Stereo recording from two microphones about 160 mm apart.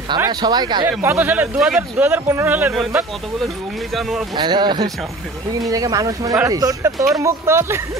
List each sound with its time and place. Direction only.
0.2 s speech: 25° right (ahead or behind)
0.8 s a man's voice: 15° right (ahead or behind)
2.7 s speech: centre (ahead or behind)
4.4 s a man's voice: 30° right (ahead or behind)